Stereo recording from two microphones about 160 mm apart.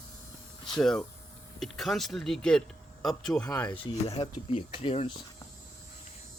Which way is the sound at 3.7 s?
35° left (ahead or behind).